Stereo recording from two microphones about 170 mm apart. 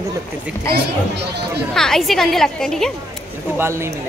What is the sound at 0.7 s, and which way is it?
Speech, 75° right (ahead or behind).